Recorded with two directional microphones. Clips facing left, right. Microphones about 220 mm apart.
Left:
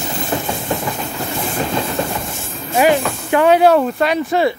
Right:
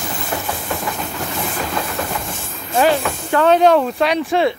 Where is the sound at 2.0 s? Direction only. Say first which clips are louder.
Left 3 dB; 25° left (ahead or behind).